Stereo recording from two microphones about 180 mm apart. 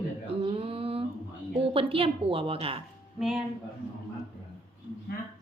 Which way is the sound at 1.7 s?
30° right (ahead or behind).